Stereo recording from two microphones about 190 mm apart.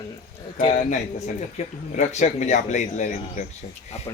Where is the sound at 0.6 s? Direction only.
35° left (ahead or behind).